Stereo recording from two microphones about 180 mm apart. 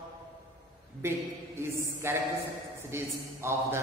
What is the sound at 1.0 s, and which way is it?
A woman's voice, 15° right (ahead or behind).